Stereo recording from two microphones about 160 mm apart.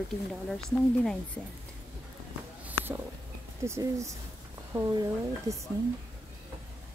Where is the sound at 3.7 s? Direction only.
20° right (ahead or behind).